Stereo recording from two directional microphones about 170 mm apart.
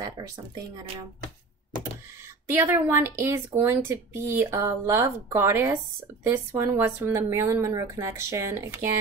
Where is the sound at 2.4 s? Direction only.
15° right (ahead or behind).